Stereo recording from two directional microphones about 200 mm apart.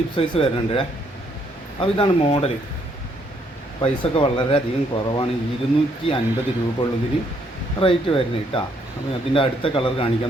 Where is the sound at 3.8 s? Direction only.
25° left (ahead or behind).